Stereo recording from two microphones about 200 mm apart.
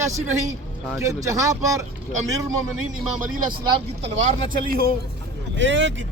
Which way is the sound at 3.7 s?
30° right (ahead or behind).